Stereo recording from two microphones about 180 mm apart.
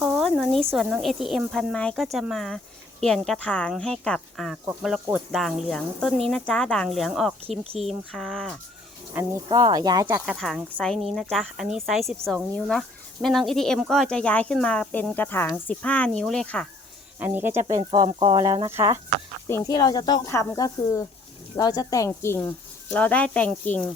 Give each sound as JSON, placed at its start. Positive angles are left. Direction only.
{"t": 0.0, "sound": "speech", "side_deg": 0}
{"t": 9.1, "sound": "speech", "side_deg": -20}
{"t": 10.2, "sound": "speech", "side_deg": 0}
{"t": 17.2, "sound": "speech", "side_deg": -10}
{"t": 17.7, "sound": "speech", "side_deg": -25}
{"t": 19.5, "sound": "speech", "side_deg": 15}